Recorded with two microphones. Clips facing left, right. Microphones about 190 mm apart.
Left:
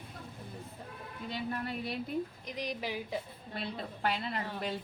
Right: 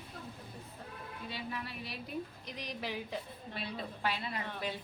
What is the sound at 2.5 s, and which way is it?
Speech, 10° left (ahead or behind).